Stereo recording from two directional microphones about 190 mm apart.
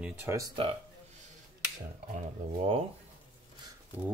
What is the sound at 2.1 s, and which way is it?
Speech, 35° right (ahead or behind).